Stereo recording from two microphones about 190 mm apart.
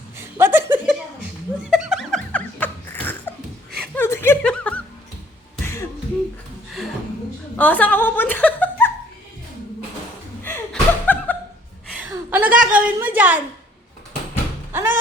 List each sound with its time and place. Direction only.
0.2 s chuckle: 10° right (ahead or behind)
1.7 s laughter: centre (ahead or behind)
3.9 s chuckle: 10° left (ahead or behind)
5.6 s throat clearing: 15° left (ahead or behind)
7.5 s chuckle: 10° left (ahead or behind)
10.4 s chuckle: 10° left (ahead or behind)
12.1 s a sound: 10° right (ahead or behind)
14.7 s music: 10° right (ahead or behind)